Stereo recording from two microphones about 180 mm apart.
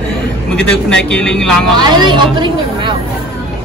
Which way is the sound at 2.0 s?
25° right (ahead or behind).